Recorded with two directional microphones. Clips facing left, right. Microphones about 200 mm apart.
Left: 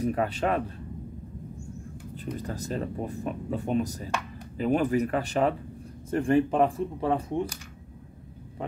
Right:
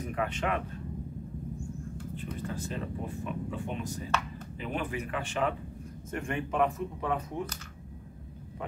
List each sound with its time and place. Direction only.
0.0 s speech: 35° left (ahead or behind)
2.3 s speech: 40° left (ahead or behind)